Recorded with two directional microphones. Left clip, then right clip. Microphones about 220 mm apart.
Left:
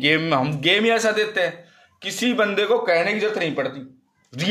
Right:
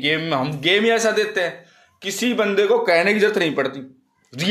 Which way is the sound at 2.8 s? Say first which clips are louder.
Right 3 dB; 15° right (ahead or behind).